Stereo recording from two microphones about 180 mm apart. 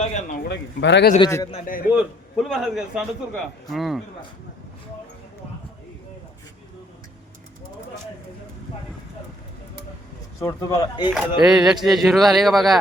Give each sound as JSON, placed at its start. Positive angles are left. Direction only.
{"t": 0.0, "sound": "a man's voice", "side_deg": 40}
{"t": 0.5, "sound": "a man's voice", "side_deg": 75}
{"t": 1.2, "sound": "a man's voice", "side_deg": 15}
{"t": 1.9, "sound": "a man's voice", "side_deg": -5}
{"t": 10.4, "sound": "speech", "side_deg": 20}
{"t": 11.1, "sound": "a man's voice", "side_deg": -5}